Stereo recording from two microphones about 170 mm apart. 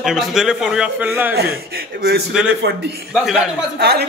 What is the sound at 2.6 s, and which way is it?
Speech, 85° right.